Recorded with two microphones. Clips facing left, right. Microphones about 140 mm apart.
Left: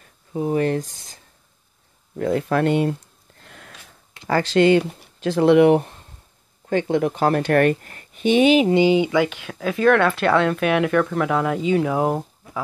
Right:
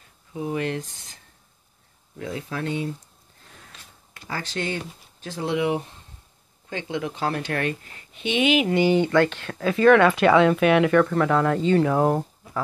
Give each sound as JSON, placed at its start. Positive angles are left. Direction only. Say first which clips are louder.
{"t": 0.3, "sound": "speech", "louder": "left 6 dB", "side_deg": 40}
{"t": 2.1, "sound": "speech", "louder": "left 11 dB", "side_deg": 55}
{"t": 3.4, "sound": "a sound", "louder": "left 5 dB", "side_deg": 70}
{"t": 4.3, "sound": "speech", "louder": "left 14 dB", "side_deg": 90}
{"t": 8.6, "sound": "speech", "louder": "left 3 dB", "side_deg": 20}